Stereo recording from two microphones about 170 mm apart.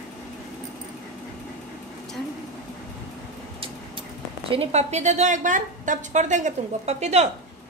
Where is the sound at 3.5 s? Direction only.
30° right (ahead or behind).